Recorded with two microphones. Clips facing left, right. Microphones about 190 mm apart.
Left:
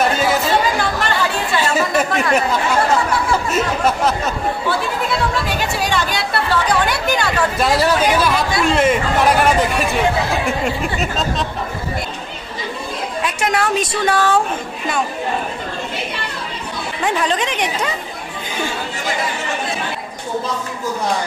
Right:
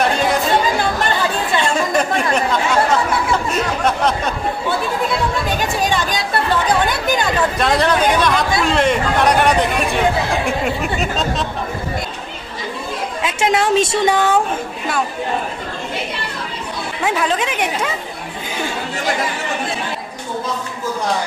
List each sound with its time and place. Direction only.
0.0 s chatter: 5° left (ahead or behind)
1.6 s chatter: 5° left (ahead or behind)
3.5 s speech: 5° left (ahead or behind)
5.9 s chatter: 20° right (ahead or behind)
7.5 s speech: 5° left (ahead or behind)
13.2 s a woman's voice: 25° right (ahead or behind)
17.0 s speech: 5° right (ahead or behind)